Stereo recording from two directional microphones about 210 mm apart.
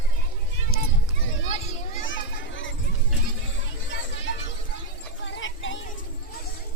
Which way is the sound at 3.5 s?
60° left (ahead or behind).